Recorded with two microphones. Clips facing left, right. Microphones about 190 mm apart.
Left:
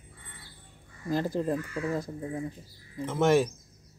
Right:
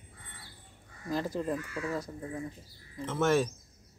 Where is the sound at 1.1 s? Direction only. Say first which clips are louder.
Left 4 dB; 40° left (ahead or behind).